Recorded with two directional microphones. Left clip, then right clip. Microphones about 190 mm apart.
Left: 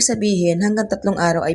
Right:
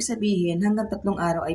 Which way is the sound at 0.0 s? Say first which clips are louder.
Left 8 dB; 35° left (ahead or behind).